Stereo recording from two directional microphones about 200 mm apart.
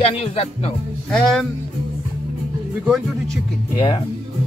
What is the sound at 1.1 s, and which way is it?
Speech, centre (ahead or behind).